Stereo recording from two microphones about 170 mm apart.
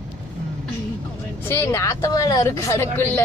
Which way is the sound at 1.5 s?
15° left (ahead or behind).